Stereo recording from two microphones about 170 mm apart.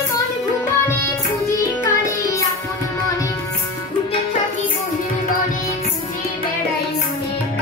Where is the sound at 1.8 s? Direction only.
20° left (ahead or behind).